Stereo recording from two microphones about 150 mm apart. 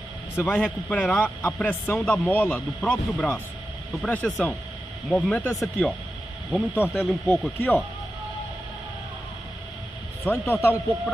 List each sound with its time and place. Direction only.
0.4 s a man's voice: 10° left (ahead or behind)
6.7 s a man's voice: 15° left (ahead or behind)
10.2 s a man's voice: 15° left (ahead or behind)